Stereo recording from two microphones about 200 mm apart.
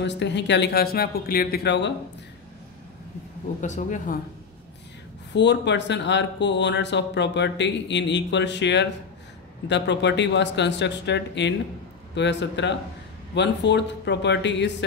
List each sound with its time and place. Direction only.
0.0 s speech: 60° left (ahead or behind)
3.6 s speech: 40° left (ahead or behind)
5.3 s speech: 60° left (ahead or behind)